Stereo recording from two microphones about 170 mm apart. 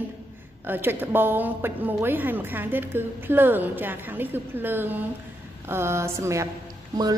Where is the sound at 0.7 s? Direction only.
10° right (ahead or behind).